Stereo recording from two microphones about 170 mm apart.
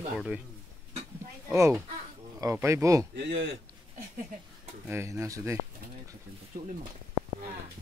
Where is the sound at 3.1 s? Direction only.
90° right.